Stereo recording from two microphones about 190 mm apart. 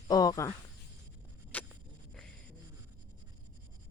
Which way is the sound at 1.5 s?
10° left (ahead or behind).